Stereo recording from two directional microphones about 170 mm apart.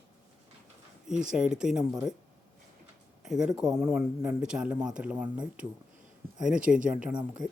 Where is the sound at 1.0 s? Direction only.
5° right (ahead or behind).